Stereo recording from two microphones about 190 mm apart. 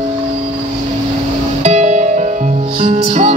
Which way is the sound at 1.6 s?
40° right (ahead or behind).